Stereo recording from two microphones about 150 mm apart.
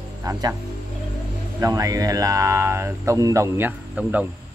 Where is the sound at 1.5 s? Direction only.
20° right (ahead or behind).